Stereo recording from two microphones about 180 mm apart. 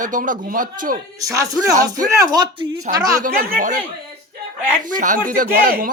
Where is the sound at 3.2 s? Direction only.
50° right (ahead or behind).